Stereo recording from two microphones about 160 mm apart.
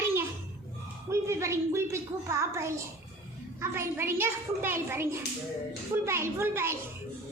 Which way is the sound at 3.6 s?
15° right (ahead or behind).